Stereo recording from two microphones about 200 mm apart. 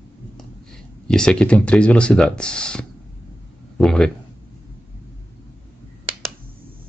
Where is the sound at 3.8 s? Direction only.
5° left (ahead or behind).